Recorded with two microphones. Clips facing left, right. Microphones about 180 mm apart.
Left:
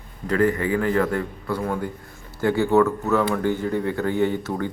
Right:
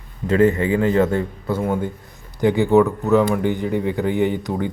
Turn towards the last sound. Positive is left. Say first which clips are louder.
# right 2 dB
turn(degrees=-15)  # may be behind; listen again after turning